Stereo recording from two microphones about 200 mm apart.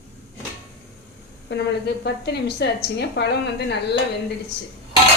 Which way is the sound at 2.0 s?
55° left (ahead or behind).